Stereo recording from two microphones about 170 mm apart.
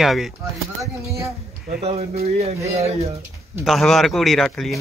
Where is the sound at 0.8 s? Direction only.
15° right (ahead or behind).